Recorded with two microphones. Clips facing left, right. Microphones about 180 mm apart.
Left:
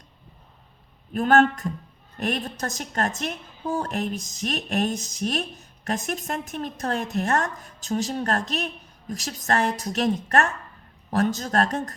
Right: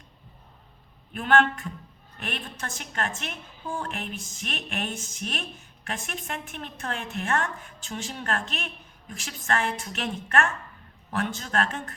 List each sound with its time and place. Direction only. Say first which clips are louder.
1.1 s a woman's voice: left 4 dB; 40° left (ahead or behind)